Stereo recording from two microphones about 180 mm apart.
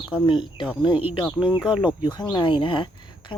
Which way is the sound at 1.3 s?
5° right (ahead or behind).